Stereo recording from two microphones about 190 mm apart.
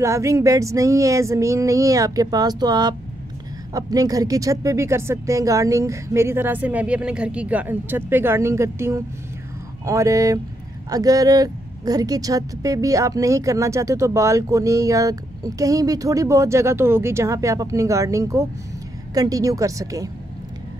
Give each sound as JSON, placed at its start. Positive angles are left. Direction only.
{"t": 0.0, "sound": "a woman's voice", "side_deg": -15}